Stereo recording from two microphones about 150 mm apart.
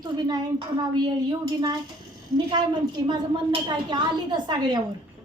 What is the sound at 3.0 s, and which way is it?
A woman's voice, 30° right (ahead or behind).